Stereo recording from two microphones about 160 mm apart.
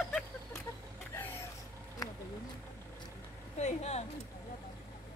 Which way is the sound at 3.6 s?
45° left (ahead or behind).